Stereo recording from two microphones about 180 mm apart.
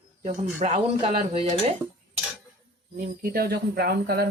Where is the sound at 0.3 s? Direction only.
40° right (ahead or behind).